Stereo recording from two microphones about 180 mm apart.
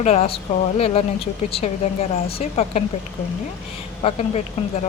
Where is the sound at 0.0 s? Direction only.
35° left (ahead or behind).